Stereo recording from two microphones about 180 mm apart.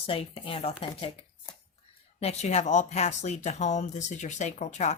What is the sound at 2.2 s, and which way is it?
Speech, 40° left (ahead or behind).